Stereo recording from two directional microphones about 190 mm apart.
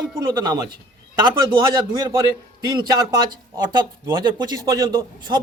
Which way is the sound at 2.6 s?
20° right (ahead or behind).